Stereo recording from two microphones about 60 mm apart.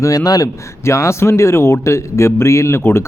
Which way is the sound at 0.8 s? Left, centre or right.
Left.